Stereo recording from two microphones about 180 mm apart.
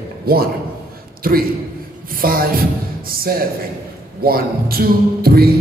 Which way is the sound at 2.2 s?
55° right (ahead or behind).